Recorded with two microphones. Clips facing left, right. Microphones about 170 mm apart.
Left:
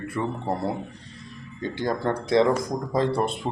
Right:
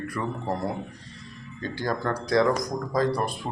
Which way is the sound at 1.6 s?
20° left (ahead or behind).